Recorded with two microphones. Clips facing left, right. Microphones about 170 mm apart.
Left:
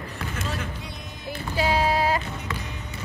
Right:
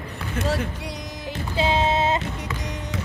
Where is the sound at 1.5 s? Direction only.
25° right (ahead or behind).